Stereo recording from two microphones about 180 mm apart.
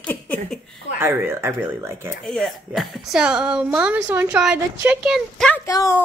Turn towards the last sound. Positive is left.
turn(degrees=15)  # may be behind; listen again after turning